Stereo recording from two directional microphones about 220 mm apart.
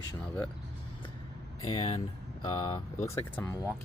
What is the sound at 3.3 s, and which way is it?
Speech, 10° left (ahead or behind).